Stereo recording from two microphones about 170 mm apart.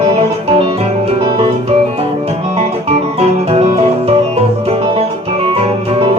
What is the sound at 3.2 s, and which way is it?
Music, 35° right (ahead or behind).